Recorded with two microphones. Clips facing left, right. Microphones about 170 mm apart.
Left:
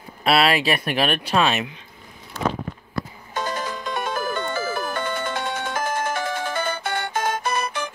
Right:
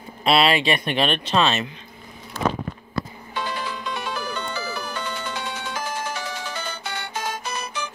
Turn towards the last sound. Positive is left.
turn(degrees=55)  # may be behind; listen again after turning